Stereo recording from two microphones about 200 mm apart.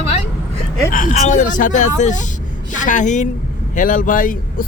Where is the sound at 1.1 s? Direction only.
35° left (ahead or behind).